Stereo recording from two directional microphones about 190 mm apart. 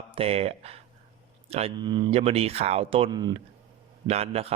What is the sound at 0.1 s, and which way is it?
Speech, 30° right (ahead or behind).